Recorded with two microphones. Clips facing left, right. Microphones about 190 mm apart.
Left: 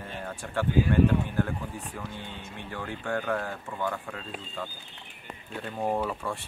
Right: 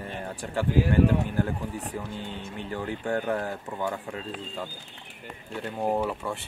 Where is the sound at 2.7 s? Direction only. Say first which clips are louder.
Right 3 dB; 20° right (ahead or behind).